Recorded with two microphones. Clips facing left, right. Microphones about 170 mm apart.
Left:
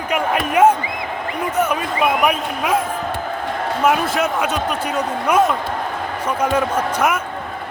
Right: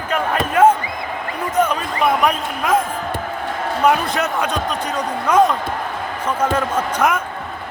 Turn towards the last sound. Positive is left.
turn(degrees=5)  # may be behind; listen again after turning